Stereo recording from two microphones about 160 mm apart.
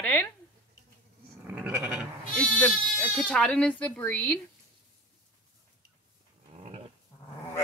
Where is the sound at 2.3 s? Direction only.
10° left (ahead or behind).